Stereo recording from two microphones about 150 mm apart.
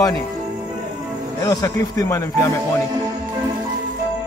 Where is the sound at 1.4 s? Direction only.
25° left (ahead or behind).